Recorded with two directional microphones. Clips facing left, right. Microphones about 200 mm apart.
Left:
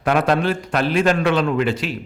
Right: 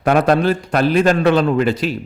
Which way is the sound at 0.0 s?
40° right (ahead or behind).